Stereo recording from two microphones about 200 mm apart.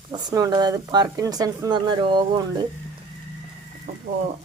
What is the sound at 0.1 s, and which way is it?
Speech, 20° right (ahead or behind).